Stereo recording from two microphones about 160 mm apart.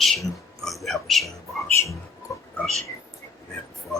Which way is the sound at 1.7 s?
20° left (ahead or behind).